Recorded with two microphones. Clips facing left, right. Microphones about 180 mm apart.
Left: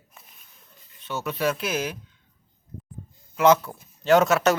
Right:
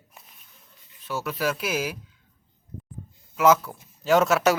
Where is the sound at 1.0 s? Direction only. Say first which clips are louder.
Left 1 dB; 5° right (ahead or behind).